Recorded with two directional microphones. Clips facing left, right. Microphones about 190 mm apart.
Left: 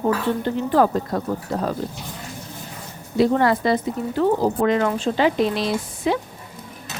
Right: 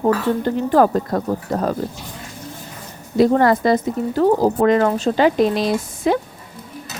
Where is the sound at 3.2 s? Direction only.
45° right (ahead or behind).